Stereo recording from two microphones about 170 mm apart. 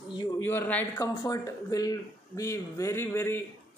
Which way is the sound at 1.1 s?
20° left (ahead or behind).